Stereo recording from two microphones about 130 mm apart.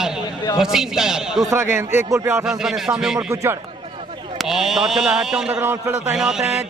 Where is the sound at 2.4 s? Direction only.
5° right (ahead or behind).